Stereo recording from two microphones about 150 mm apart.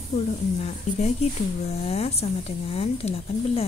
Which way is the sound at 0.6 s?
45° left (ahead or behind).